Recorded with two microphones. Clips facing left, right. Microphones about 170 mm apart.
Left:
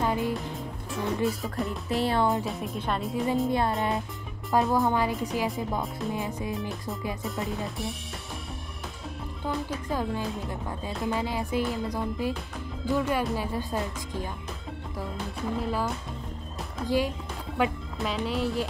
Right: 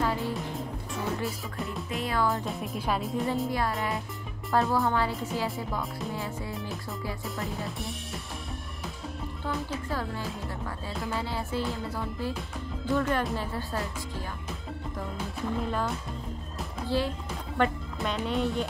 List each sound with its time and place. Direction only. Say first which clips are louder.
0.0 s music: left 2 dB; 20° left (ahead or behind)
0.3 s music: left 1 dB; centre (ahead or behind)
2.0 s speech: left 2 dB; 25° left (ahead or behind)
2.4 s speech: left 1 dB; centre (ahead or behind)
3.4 s speech: left 4 dB; 25° left (ahead or behind)
6.5 s speech: left 3 dB; centre (ahead or behind)
9.8 s speech: left 3 dB; 15° left (ahead or behind)
13.4 s speech: left 3 dB; 15° left (ahead or behind)
15.0 s speech: left 1 dB; centre (ahead or behind)
17.6 s speech: even; centre (ahead or behind)